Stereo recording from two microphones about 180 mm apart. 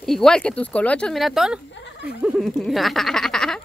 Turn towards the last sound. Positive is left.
turn(degrees=5)  # may be behind; listen again after turning